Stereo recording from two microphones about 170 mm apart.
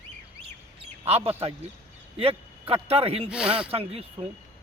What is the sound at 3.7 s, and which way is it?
Speech, 35° right (ahead or behind).